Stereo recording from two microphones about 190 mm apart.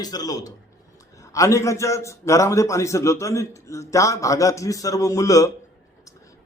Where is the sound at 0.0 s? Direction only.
20° left (ahead or behind).